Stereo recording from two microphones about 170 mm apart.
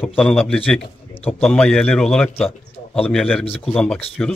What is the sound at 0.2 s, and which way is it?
A man's voice, 5° left (ahead or behind).